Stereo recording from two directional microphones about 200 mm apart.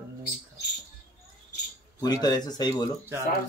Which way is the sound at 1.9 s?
20° left (ahead or behind).